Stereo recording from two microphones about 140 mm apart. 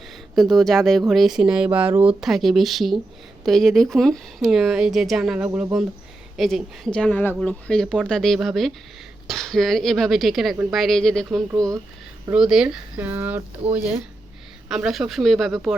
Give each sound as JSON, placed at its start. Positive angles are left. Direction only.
{"t": 0.3, "sound": "speech", "side_deg": 0}
{"t": 11.5, "sound": "speech", "side_deg": -25}
{"t": 12.3, "sound": "speech", "side_deg": -5}
{"t": 14.7, "sound": "speech", "side_deg": -5}